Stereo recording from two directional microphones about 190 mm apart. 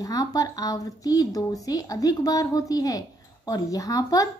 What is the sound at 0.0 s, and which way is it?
A woman's voice, 20° left (ahead or behind).